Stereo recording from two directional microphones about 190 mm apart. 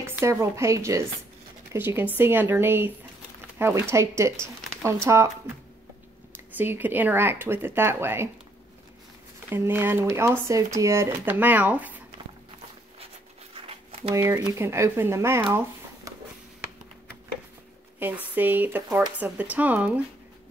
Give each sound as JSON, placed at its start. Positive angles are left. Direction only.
{"t": 0.0, "sound": "speech", "side_deg": -15}
{"t": 6.3, "sound": "speech", "side_deg": -10}
{"t": 9.5, "sound": "speech", "side_deg": -10}
{"t": 13.6, "sound": "a sound", "side_deg": -30}
{"t": 14.1, "sound": "speech", "side_deg": -15}
{"t": 17.9, "sound": "speech", "side_deg": -10}